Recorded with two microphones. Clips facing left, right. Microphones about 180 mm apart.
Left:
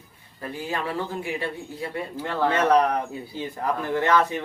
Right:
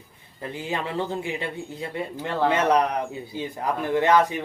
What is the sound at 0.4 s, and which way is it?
A man's voice, 20° right (ahead or behind).